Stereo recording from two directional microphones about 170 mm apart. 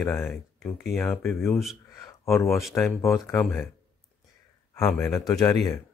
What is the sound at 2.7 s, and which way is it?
Speech, 15° left (ahead or behind).